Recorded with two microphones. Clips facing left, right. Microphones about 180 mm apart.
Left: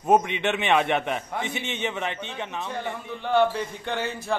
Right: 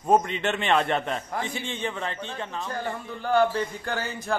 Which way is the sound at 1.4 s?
20° left (ahead or behind).